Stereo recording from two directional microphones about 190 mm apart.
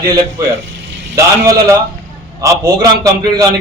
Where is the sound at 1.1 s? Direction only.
15° right (ahead or behind).